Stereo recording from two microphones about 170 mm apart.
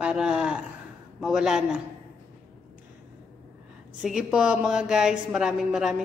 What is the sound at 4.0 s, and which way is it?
A woman's voice, 5° right (ahead or behind).